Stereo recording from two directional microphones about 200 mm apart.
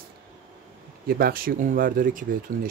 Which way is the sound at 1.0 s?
50° right (ahead or behind).